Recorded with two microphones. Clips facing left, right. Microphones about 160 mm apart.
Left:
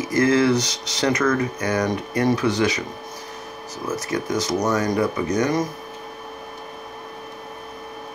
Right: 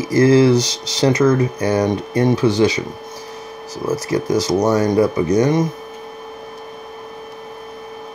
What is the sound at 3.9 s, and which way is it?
Speech, 35° right (ahead or behind).